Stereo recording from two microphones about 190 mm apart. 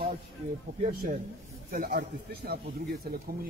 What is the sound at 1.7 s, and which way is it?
Speech, 50° right (ahead or behind).